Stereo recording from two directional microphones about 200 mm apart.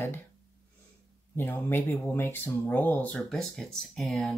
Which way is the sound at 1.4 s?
10° left (ahead or behind).